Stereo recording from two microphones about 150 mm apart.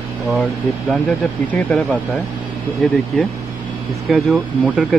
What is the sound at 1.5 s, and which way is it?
Speech, 10° left (ahead or behind).